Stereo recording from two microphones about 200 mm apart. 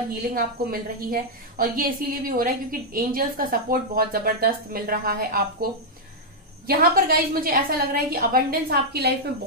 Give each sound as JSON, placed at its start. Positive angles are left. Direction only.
{"t": 0.1, "sound": "a woman's voice", "side_deg": -45}
{"t": 6.7, "sound": "a woman's voice", "side_deg": -50}